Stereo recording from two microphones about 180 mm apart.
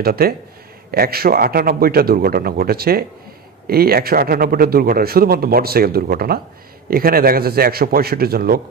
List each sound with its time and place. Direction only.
0.0 s a man's voice: 60° right (ahead or behind)